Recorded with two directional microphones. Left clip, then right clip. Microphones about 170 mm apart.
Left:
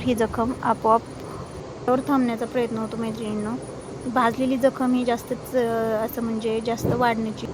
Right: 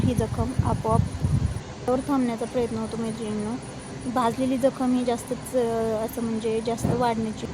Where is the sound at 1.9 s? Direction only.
15° left (ahead or behind).